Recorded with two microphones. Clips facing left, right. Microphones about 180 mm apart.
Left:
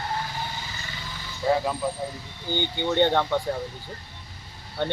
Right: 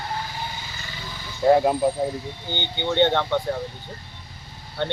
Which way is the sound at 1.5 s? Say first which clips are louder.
Right 7 dB; 50° right (ahead or behind).